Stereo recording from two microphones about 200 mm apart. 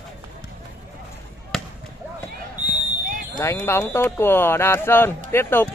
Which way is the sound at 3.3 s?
10° left (ahead or behind).